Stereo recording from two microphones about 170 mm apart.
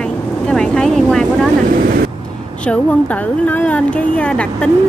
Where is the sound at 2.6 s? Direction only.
10° left (ahead or behind).